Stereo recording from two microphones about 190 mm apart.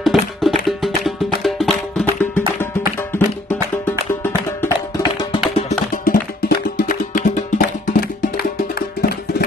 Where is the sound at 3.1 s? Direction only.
10° left (ahead or behind).